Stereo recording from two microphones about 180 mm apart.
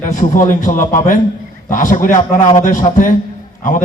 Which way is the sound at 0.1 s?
45° left (ahead or behind).